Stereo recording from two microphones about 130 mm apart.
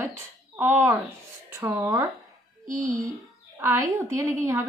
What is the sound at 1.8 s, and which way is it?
Speech, 25° right (ahead or behind).